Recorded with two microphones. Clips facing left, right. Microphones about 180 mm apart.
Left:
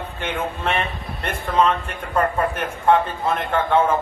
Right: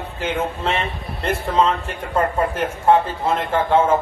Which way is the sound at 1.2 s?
25° right (ahead or behind).